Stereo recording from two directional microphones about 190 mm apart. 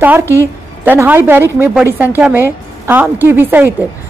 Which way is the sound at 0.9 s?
10° right (ahead or behind).